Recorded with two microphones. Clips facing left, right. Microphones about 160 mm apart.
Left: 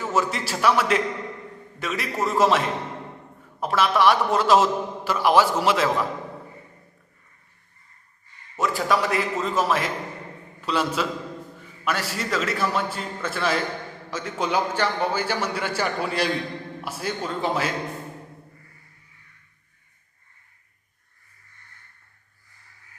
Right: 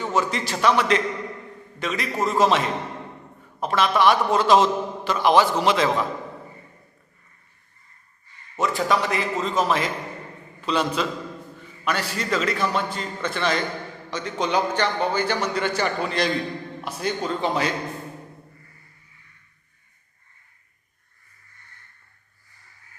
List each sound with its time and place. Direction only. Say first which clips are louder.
0.0 s a man's voice: right 1 dB; 5° left (ahead or behind)
8.5 s a man's voice: right 1 dB; centre (ahead or behind)